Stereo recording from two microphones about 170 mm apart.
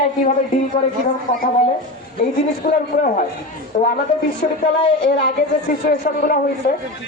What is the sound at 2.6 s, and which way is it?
A woman's voice, 60° left (ahead or behind).